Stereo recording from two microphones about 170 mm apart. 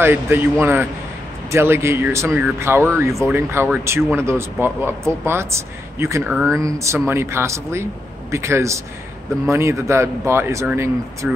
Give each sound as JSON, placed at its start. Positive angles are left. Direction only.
{"t": 0.0, "sound": "speech", "side_deg": -10}